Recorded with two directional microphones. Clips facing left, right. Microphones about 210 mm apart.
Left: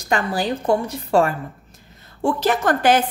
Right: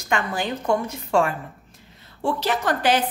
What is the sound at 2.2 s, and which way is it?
Speech, 50° left (ahead or behind).